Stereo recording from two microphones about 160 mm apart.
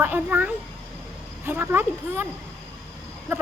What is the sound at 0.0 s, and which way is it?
Speech, 10° right (ahead or behind).